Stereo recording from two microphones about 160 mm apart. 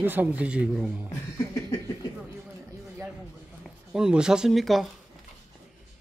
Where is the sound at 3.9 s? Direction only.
5° right (ahead or behind).